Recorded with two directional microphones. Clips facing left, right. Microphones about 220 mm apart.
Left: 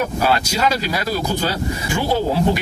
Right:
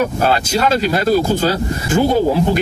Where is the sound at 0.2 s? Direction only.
50° right (ahead or behind).